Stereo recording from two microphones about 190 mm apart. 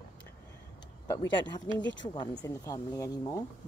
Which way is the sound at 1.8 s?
75° left (ahead or behind).